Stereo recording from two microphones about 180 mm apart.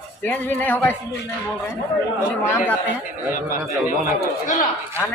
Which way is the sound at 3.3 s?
50° left (ahead or behind).